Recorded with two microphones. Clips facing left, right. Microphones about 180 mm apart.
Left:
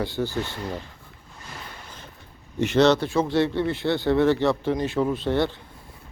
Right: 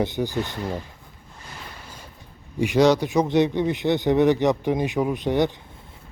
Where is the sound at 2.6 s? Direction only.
10° right (ahead or behind).